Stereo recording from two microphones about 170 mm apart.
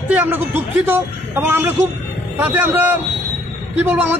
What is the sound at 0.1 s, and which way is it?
A man's voice, 10° right (ahead or behind).